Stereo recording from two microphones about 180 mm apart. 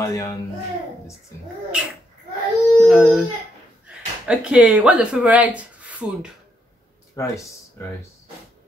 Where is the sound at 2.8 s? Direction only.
5° right (ahead or behind).